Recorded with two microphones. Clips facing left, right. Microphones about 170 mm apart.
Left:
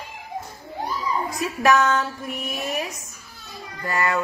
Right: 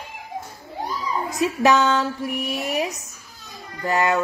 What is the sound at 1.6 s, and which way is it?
Speech, 20° right (ahead or behind).